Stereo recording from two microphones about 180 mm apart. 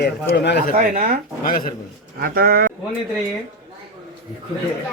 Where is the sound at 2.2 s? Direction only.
55° right (ahead or behind).